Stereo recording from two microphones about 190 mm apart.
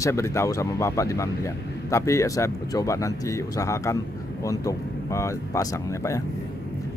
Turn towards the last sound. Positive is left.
turn(degrees=15)  # may be behind; listen again after turning